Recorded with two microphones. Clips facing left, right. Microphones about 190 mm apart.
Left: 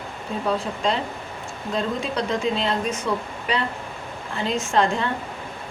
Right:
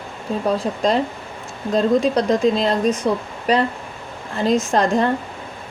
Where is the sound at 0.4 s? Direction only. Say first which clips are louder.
Right 4 dB; 40° right (ahead or behind).